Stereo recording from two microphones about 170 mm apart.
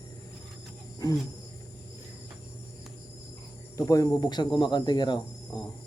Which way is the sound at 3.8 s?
20° left (ahead or behind).